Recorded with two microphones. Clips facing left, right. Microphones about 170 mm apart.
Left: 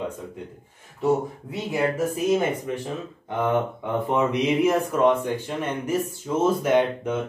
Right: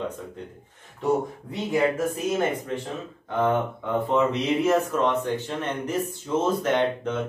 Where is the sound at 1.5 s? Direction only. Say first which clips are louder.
Right 2 dB; 5° left (ahead or behind).